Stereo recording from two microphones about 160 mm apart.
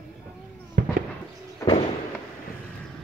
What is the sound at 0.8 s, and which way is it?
Fireworks, 65° right (ahead or behind).